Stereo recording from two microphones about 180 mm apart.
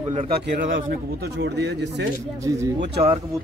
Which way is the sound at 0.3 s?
65° right (ahead or behind).